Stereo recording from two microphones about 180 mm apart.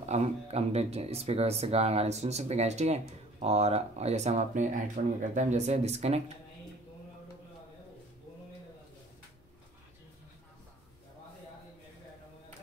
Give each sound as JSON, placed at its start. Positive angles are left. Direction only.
{"t": 0.1, "sound": "speech", "side_deg": -35}
{"t": 5.0, "sound": "speech", "side_deg": -50}
{"t": 5.3, "sound": "speech", "side_deg": -40}